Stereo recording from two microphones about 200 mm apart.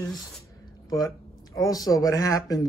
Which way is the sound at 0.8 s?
20° left (ahead or behind).